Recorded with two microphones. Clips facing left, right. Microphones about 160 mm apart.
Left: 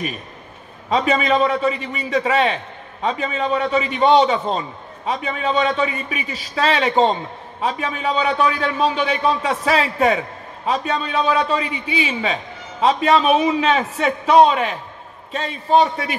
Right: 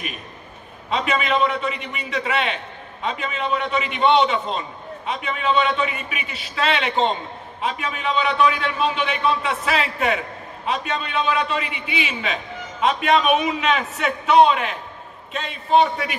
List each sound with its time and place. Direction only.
0.8 s a man's voice: 35° left (ahead or behind)